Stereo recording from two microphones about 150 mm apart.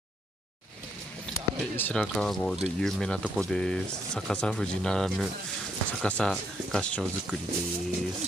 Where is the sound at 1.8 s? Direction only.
10° left (ahead or behind).